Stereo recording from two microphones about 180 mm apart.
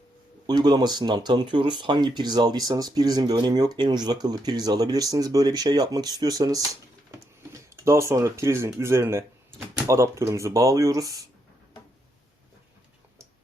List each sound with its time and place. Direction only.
0.4 s speech: 25° right (ahead or behind)